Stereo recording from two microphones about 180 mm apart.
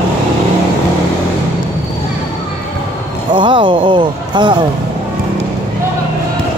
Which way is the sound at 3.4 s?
25° right (ahead or behind).